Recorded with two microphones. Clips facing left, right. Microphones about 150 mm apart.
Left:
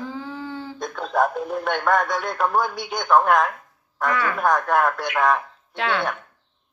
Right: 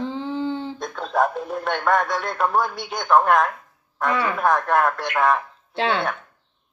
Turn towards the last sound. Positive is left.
turn(degrees=-30)  # may be behind; listen again after turning